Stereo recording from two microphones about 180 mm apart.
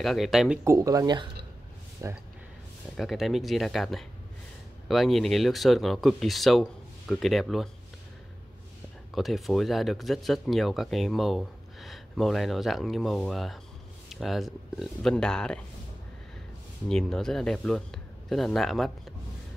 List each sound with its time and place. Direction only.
0.0 s speech: centre (ahead or behind)
0.7 s speech: 20° right (ahead or behind)
3.0 s speech: centre (ahead or behind)
9.1 s speech: centre (ahead or behind)
16.9 s speech: 5° left (ahead or behind)